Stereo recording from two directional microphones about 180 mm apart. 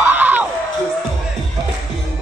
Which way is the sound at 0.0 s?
10° right (ahead or behind).